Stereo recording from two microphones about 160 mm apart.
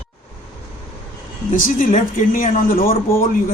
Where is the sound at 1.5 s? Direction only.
55° left (ahead or behind).